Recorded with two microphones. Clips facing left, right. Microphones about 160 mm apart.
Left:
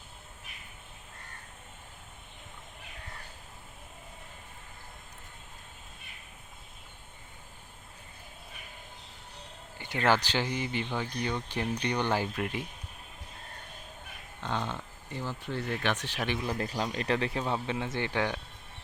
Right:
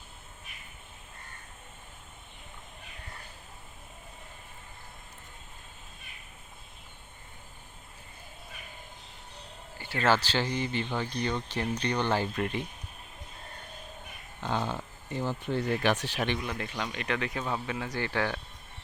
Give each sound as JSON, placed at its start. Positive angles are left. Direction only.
{"t": 9.7, "sound": "speech", "side_deg": 20}
{"t": 14.5, "sound": "a sound", "side_deg": -10}
{"t": 15.2, "sound": "speech", "side_deg": -20}
{"t": 16.1, "sound": "speech", "side_deg": 5}
{"t": 16.4, "sound": "speech", "side_deg": 35}